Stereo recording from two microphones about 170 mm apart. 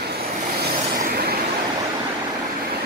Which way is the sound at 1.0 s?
65° right (ahead or behind).